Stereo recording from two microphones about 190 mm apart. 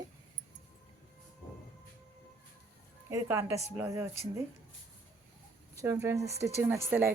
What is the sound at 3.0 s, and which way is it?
A woman's voice, 15° right (ahead or behind).